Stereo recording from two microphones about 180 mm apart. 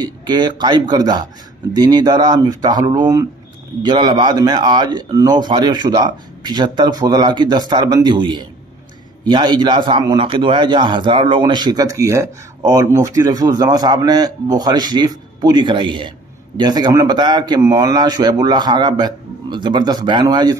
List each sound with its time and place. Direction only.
0.0 s a man's voice: 25° right (ahead or behind)